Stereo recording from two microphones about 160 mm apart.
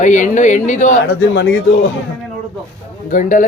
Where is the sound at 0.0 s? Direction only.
50° left (ahead or behind).